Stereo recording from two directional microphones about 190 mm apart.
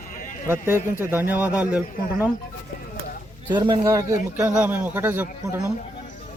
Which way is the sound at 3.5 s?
25° right (ahead or behind).